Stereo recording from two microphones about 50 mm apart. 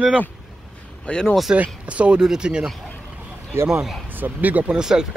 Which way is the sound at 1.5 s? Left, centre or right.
Right.